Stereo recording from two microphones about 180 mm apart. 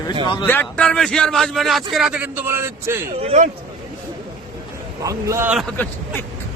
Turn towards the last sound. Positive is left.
turn(degrees=10)  # may be behind; listen again after turning